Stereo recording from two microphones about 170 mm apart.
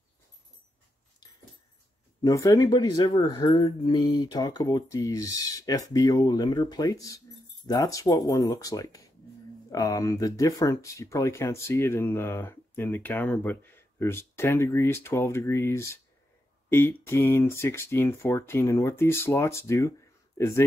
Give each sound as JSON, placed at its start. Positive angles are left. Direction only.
{"t": 2.2, "sound": "speech", "side_deg": 20}